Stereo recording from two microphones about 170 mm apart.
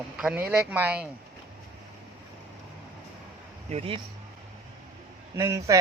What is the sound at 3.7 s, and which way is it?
Speech, 35° right (ahead or behind).